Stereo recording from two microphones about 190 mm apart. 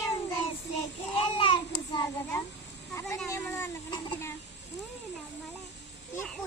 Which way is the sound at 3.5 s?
15° left (ahead or behind).